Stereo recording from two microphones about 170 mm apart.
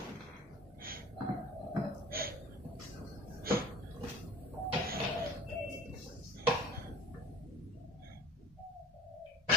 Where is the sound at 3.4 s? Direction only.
60° right (ahead or behind).